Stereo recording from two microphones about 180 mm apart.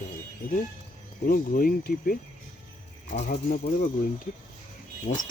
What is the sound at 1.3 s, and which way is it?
Speech, 55° left (ahead or behind).